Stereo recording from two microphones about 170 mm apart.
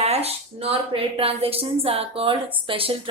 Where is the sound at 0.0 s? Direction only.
40° right (ahead or behind).